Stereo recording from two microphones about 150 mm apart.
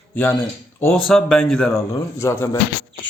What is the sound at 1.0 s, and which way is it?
Speech, 5° left (ahead or behind).